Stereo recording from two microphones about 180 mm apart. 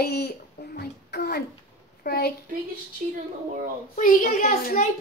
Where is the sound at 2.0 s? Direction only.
60° left (ahead or behind).